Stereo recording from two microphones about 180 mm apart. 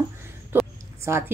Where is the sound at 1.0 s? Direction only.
15° right (ahead or behind).